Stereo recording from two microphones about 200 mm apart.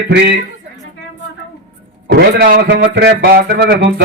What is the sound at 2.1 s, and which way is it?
Speech, 50° right (ahead or behind).